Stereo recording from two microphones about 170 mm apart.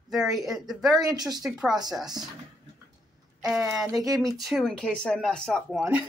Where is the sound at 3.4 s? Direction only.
5° right (ahead or behind).